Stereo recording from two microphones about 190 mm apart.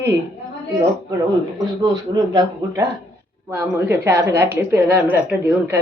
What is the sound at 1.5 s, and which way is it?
Speech, 20° right (ahead or behind).